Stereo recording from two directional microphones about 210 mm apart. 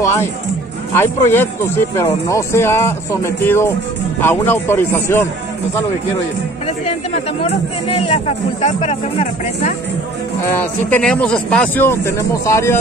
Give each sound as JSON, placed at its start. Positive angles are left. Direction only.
{"t": 0.0, "sound": "speech", "side_deg": 10}
{"t": 7.4, "sound": "speech", "side_deg": 30}
{"t": 10.9, "sound": "speech", "side_deg": 5}